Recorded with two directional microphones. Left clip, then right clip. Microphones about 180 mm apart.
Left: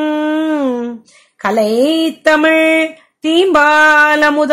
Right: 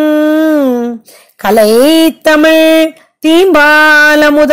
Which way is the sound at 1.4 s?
40° right (ahead or behind).